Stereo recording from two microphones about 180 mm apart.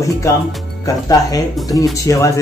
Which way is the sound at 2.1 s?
15° left (ahead or behind).